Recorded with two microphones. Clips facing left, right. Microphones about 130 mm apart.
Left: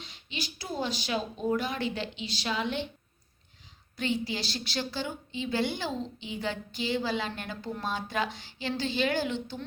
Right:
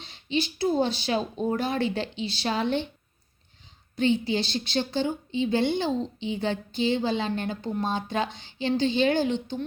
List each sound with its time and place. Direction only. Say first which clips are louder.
0.0 s speech: right 11 dB; 30° right (ahead or behind)
3.9 s a woman's voice: right 7 dB; 25° right (ahead or behind)